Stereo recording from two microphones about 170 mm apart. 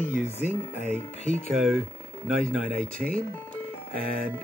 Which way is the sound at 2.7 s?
55° right (ahead or behind).